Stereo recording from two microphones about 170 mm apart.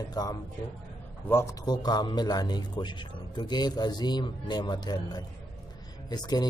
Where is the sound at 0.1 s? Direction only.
25° left (ahead or behind).